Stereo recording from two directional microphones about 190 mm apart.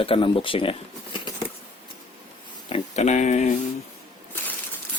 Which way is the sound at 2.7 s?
35° left (ahead or behind).